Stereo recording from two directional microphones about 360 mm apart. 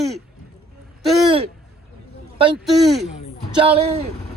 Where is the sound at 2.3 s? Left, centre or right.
Centre.